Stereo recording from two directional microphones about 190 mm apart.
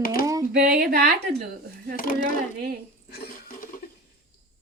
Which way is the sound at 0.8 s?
55° right (ahead or behind).